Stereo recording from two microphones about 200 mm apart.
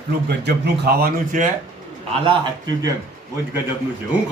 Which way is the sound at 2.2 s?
20° right (ahead or behind).